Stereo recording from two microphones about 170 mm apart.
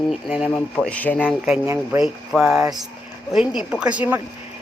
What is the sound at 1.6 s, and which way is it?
Speech, 15° right (ahead or behind).